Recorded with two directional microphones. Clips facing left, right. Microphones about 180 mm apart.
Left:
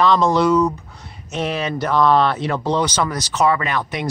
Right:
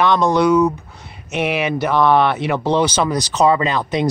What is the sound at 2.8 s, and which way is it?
Speech, 10° right (ahead or behind).